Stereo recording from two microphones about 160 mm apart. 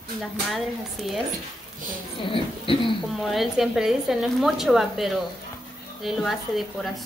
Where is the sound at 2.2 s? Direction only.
30° left (ahead or behind).